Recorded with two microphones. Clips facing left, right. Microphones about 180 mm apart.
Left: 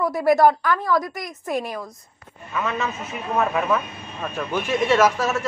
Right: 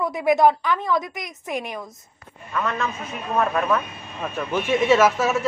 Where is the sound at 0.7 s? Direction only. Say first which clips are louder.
Left 2 dB; 20° right (ahead or behind).